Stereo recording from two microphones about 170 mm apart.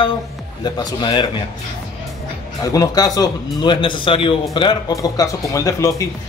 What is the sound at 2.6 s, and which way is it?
Speech, 20° left (ahead or behind).